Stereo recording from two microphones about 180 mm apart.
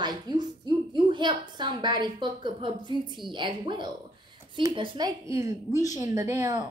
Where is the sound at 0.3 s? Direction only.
25° right (ahead or behind).